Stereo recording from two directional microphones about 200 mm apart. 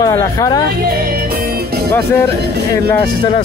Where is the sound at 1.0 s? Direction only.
50° right (ahead or behind).